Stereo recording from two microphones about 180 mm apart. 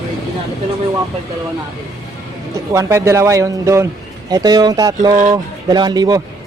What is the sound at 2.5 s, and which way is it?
Speech, 15° right (ahead or behind).